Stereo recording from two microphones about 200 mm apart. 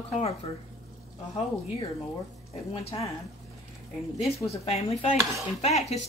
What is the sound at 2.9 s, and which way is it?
Speech, 25° left (ahead or behind).